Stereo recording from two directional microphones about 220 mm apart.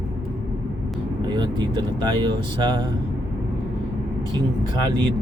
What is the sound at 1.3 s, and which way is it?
Speech, 20° right (ahead or behind).